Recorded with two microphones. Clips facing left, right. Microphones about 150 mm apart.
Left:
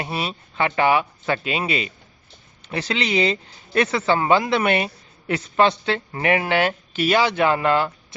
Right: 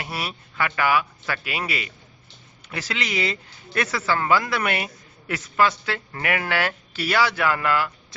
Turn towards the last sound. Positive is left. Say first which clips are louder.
# left 4 dB
turn(degrees=25)  # may be behind; listen again after turning